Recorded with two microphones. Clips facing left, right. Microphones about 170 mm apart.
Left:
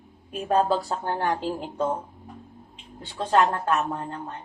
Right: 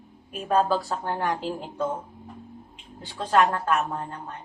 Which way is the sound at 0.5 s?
30° left (ahead or behind).